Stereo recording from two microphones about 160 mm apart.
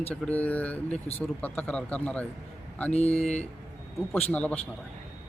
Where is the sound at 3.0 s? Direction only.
40° left (ahead or behind).